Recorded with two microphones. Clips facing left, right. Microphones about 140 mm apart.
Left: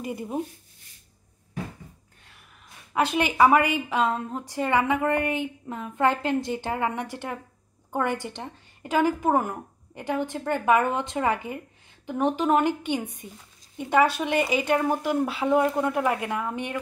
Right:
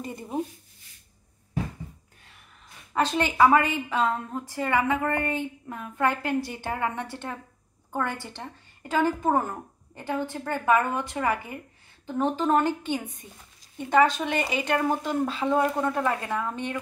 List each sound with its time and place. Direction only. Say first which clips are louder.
0.0 s a woman's voice: left 3 dB; 10° left (ahead or behind)
2.9 s a woman's voice: left 1 dB; 10° left (ahead or behind)